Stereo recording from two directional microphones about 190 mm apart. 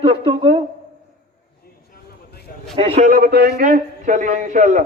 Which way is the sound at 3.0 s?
50° right (ahead or behind).